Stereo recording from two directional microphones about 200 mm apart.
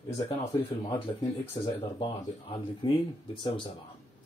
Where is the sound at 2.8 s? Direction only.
25° left (ahead or behind).